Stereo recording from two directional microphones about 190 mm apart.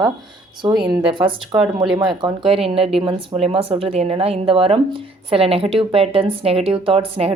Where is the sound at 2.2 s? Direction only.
30° right (ahead or behind).